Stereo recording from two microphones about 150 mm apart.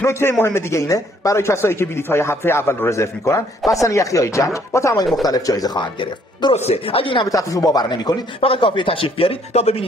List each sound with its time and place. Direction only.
0.0 s speech: 15° left (ahead or behind)
6.5 s speech: 45° left (ahead or behind)
7.2 s speech: 20° left (ahead or behind)
8.4 s speech: 40° left (ahead or behind)